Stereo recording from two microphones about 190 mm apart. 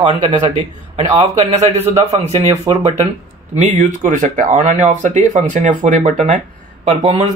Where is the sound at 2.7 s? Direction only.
20° right (ahead or behind).